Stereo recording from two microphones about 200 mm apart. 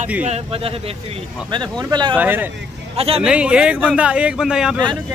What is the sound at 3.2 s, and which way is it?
Speech, 5° right (ahead or behind).